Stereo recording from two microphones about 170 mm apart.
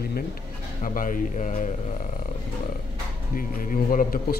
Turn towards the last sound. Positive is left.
turn(degrees=55)  # may be behind; listen again after turning